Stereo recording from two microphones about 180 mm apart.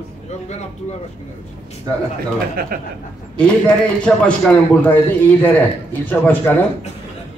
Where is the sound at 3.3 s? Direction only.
5° left (ahead or behind).